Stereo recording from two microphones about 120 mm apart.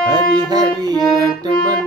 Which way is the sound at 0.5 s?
35° right (ahead or behind).